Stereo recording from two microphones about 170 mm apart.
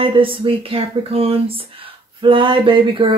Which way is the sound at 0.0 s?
30° right (ahead or behind).